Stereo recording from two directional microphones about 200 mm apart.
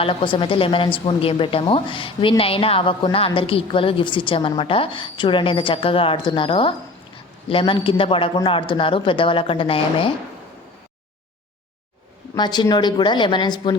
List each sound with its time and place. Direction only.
0.0 s a woman's voice: 25° left (ahead or behind)
12.3 s a woman's voice: 20° left (ahead or behind)